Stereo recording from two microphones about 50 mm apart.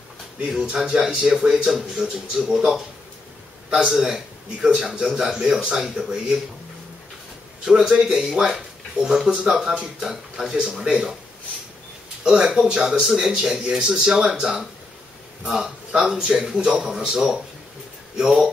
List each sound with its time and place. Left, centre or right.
0.5 s a man's voice: centre
7.6 s speech: centre
12.2 s speech: centre
16.1 s speech: centre